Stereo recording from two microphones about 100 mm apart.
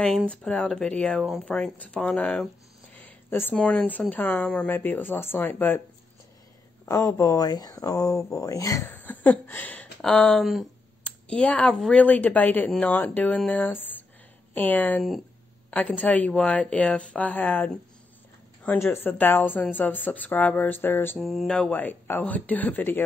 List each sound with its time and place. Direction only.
0.3 s a woman's voice: 10° left (ahead or behind)
2.9 s a sound: 15° left (ahead or behind)
3.5 s a woman's voice: 10° left (ahead or behind)
6.9 s speech: 35° left (ahead or behind)
8.9 s speech: 15° left (ahead or behind)
11.7 s mantra: centre (ahead or behind)
12.0 s a woman's voice: 15° left (ahead or behind)
19.0 s a woman's voice: 20° left (ahead or behind)
21.2 s mantra: centre (ahead or behind)
21.5 s a woman's voice: 15° left (ahead or behind)